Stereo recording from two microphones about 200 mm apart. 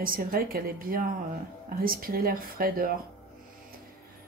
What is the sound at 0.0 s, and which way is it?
A woman's voice, 45° right (ahead or behind).